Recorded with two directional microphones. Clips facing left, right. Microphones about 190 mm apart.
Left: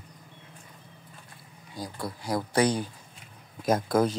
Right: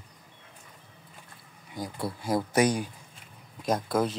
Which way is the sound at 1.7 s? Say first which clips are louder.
Right 2 dB; 25° right (ahead or behind).